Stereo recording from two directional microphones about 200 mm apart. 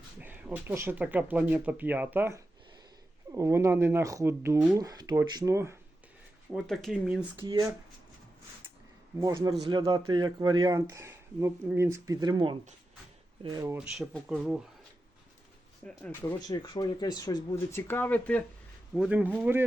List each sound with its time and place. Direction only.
0.2 s speech: 10° right (ahead or behind)
6.5 s speech: centre (ahead or behind)
7.4 s speech: 20° right (ahead or behind)
9.2 s speech: 15° right (ahead or behind)
13.7 s speech: centre (ahead or behind)
15.8 s speech: 5° left (ahead or behind)
16.5 s speech: 20° left (ahead or behind)
18.9 s speech: 5° right (ahead or behind)